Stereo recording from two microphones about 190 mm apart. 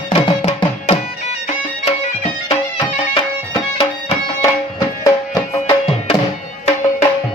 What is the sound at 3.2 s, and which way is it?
Music, 25° left (ahead or behind).